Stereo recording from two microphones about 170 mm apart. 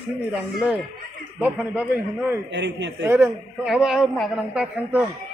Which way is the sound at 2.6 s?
90° right.